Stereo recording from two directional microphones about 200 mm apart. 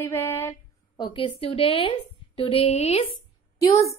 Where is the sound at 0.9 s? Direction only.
25° left (ahead or behind).